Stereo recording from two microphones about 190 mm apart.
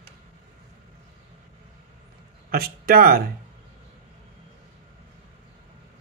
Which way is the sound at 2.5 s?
55° right (ahead or behind).